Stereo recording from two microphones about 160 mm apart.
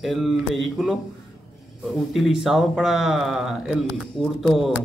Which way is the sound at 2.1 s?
Centre (ahead or behind).